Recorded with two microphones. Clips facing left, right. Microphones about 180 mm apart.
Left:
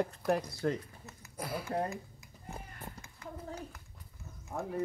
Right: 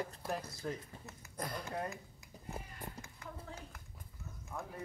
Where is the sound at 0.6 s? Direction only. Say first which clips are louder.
Left 9 dB; 70° left (ahead or behind).